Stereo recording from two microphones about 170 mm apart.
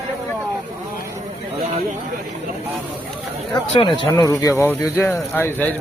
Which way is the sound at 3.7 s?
30° left (ahead or behind).